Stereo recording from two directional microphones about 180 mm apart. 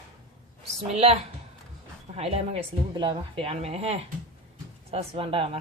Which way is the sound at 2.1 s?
35° right (ahead or behind).